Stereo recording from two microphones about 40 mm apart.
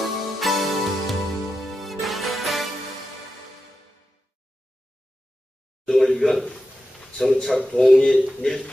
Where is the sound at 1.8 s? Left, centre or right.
Centre.